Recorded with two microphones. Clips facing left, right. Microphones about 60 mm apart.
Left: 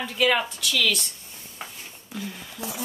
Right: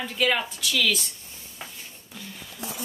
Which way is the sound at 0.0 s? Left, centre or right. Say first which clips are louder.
Left 2 dB; centre.